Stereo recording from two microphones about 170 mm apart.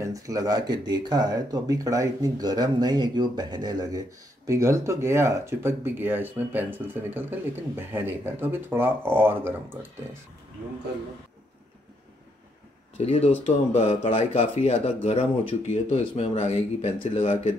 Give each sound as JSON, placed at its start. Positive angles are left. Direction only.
{"t": 0.0, "sound": "speech", "side_deg": -20}
{"t": 12.9, "sound": "speech", "side_deg": 40}